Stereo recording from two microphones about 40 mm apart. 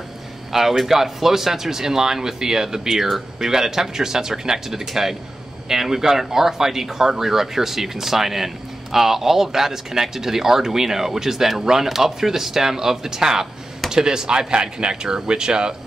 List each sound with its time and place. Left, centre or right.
0.5 s speech: centre